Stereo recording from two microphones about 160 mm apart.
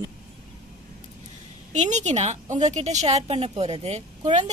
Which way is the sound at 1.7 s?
50° right (ahead or behind).